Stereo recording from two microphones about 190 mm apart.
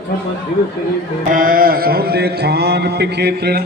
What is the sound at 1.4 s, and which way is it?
Speech, 50° right (ahead or behind).